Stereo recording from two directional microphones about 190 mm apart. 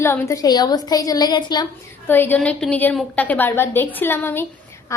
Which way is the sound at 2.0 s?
10° left (ahead or behind).